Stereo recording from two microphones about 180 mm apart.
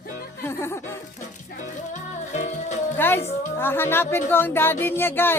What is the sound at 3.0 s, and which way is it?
Music, 10° left (ahead or behind).